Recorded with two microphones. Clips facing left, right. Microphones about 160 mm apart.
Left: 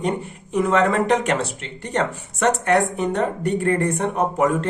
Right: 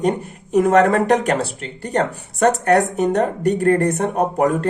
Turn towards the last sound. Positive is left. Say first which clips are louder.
# right 2 dB
turn(degrees=-40)  # may be behind; listen again after turning